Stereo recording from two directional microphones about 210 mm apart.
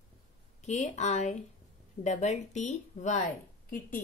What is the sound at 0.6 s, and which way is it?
Speech, 35° left (ahead or behind).